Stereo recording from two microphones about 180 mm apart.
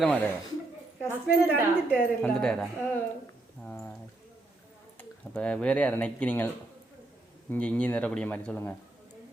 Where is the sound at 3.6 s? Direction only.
10° left (ahead or behind).